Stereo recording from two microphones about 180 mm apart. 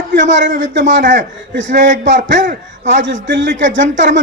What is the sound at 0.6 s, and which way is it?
Speech, 90° right.